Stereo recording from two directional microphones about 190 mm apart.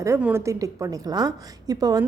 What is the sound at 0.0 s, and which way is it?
A woman's voice, 10° right (ahead or behind).